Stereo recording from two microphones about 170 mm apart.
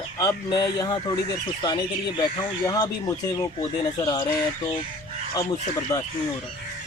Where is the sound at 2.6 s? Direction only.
20° left (ahead or behind).